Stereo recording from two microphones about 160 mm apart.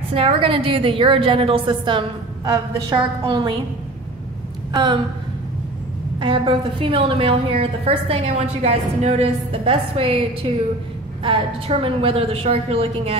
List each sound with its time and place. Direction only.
0.1 s a woman's voice: 35° right (ahead or behind)
4.7 s a woman's voice: 30° right (ahead or behind)
6.1 s a woman's voice: 30° right (ahead or behind)